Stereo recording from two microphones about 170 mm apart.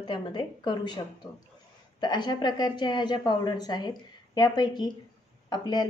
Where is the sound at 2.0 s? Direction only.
25° left (ahead or behind).